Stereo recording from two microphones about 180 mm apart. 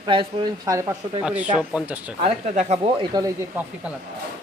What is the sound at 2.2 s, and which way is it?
Speech, 40° right (ahead or behind).